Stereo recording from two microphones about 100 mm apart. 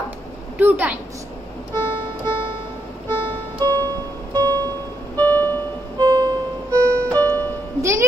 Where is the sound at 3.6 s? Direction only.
40° right (ahead or behind).